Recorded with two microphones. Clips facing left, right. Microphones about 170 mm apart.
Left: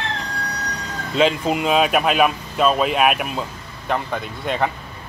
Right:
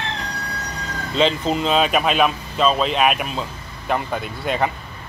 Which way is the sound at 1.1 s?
5° left (ahead or behind).